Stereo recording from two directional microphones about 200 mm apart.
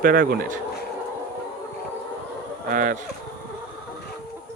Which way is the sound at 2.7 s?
45° right (ahead or behind).